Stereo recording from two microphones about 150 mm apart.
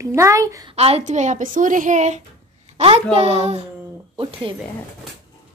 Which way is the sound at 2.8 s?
40° right (ahead or behind).